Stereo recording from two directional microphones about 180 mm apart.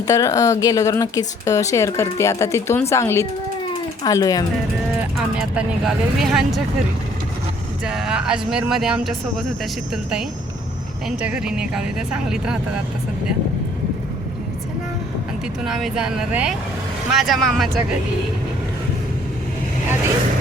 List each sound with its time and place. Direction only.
0.1 s speech: 20° left (ahead or behind)
5.4 s speech: 5° right (ahead or behind)
7.9 s speech: 5° right (ahead or behind)
15.6 s speech: centre (ahead or behind)